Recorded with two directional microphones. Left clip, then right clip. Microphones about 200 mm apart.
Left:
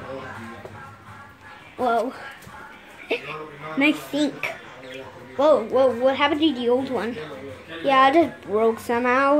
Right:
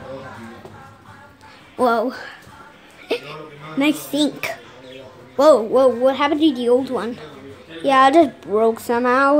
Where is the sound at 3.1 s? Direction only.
20° right (ahead or behind).